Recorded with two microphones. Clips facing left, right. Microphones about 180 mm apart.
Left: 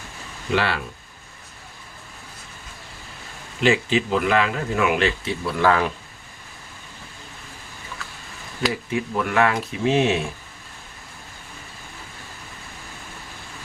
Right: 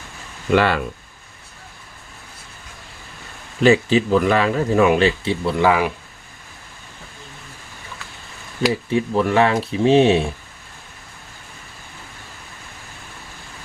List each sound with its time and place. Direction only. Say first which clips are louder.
0.5 s speech: right 6 dB; 50° right (ahead or behind)
3.6 s speech: right 5 dB; 40° right (ahead or behind)
5.6 s speech: right 2 dB; 10° right (ahead or behind)
8.9 s speech: right 6 dB; 30° right (ahead or behind)